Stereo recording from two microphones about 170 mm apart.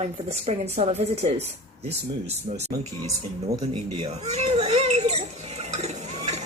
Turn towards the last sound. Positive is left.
turn(degrees=-40)  # may be behind; listen again after turning